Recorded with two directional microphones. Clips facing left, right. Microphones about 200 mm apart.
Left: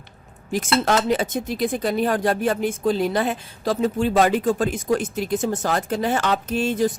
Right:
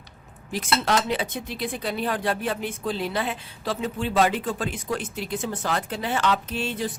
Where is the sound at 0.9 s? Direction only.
45° left (ahead or behind).